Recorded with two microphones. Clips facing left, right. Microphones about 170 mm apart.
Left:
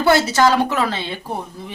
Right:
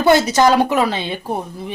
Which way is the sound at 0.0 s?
20° right (ahead or behind).